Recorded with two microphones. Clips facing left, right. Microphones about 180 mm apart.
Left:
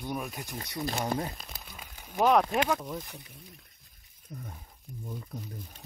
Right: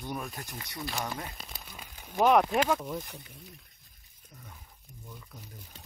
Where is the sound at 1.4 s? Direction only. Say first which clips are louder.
Even; centre (ahead or behind).